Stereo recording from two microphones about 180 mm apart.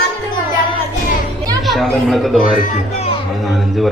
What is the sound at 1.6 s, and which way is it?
Speech, centre (ahead or behind).